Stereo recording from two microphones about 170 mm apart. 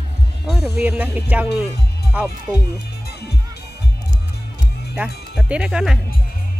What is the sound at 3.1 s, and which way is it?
Music, 70° left (ahead or behind).